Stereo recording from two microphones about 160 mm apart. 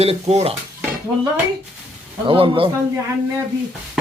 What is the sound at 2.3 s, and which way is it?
Speech, 35° right (ahead or behind).